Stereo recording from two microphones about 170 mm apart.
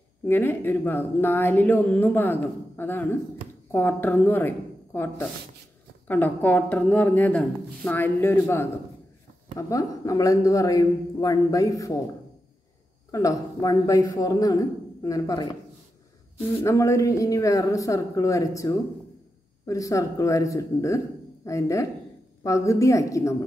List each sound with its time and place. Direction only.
0.3 s a woman's voice: 10° left (ahead or behind)
13.1 s a man's voice: 20° left (ahead or behind)
16.6 s a man's voice: 15° left (ahead or behind)